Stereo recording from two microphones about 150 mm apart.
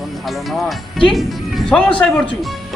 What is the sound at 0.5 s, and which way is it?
Speech, centre (ahead or behind).